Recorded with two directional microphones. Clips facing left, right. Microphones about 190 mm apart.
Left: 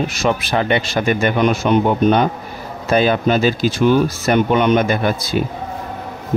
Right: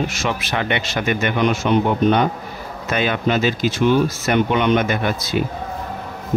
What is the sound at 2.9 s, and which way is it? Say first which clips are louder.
Speech: left 5 dB; 35° left (ahead or behind).